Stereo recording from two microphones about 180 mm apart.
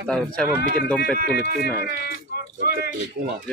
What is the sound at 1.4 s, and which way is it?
Speech, 60° left (ahead or behind).